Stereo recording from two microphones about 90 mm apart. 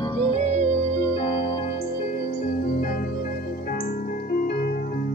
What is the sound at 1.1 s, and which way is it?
Music, 90° left.